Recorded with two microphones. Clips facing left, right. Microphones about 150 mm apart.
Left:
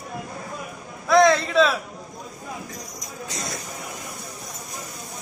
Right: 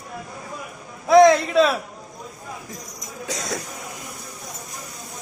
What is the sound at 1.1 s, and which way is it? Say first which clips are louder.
Speech: right 4 dB; 20° right (ahead or behind).